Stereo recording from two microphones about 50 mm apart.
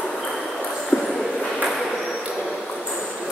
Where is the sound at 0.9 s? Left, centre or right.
Left.